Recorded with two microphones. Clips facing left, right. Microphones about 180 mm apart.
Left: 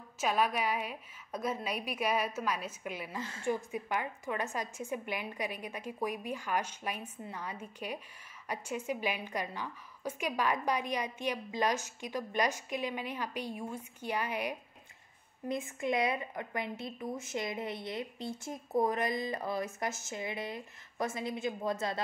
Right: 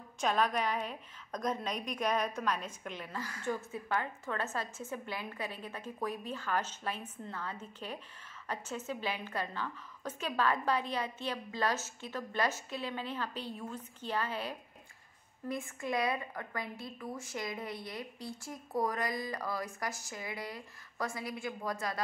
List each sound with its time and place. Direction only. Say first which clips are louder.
0.2 s a woman's voice: even; 10° left (ahead or behind)
3.2 s a woman's voice: left 3 dB; 25° left (ahead or behind)